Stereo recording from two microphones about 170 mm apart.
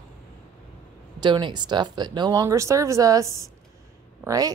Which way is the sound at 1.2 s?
25° right (ahead or behind).